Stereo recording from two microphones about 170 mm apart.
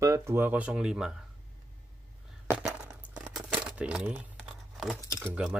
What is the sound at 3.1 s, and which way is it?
Crumpling, 5° right (ahead or behind).